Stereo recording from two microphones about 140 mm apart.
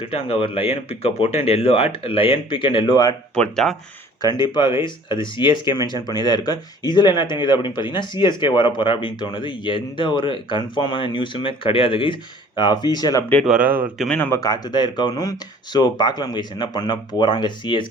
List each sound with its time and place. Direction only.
0.0 s speech: 40° left (ahead or behind)
3.3 s speech: 5° left (ahead or behind)
4.2 s speech: 30° left (ahead or behind)
13.4 s speech: 5° right (ahead or behind)
14.0 s speech: 5° left (ahead or behind)
14.3 s speech: 25° left (ahead or behind)